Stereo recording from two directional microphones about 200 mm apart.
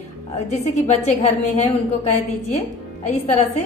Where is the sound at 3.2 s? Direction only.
35° left (ahead or behind).